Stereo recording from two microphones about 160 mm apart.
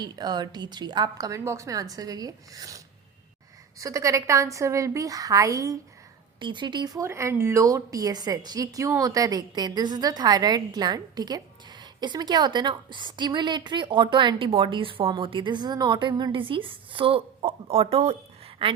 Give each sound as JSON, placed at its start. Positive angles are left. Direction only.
{"t": 0.0, "sound": "speech", "side_deg": -25}